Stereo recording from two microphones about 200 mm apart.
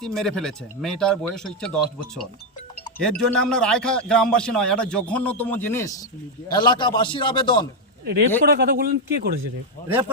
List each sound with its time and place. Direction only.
0.0 s speech: centre (ahead or behind)
6.5 s a man's voice: 20° left (ahead or behind)
8.4 s speech: 50° right (ahead or behind)